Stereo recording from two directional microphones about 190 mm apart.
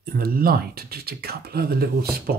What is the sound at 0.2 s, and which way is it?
Speech, 50° right (ahead or behind).